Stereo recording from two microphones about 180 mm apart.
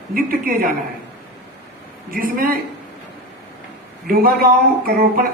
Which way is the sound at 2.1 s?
55° right (ahead or behind).